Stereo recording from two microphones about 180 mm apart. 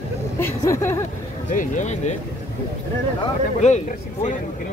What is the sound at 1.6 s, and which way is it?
Speech, 40° left (ahead or behind).